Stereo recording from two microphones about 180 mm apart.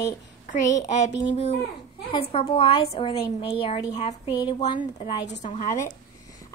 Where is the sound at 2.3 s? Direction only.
30° left (ahead or behind).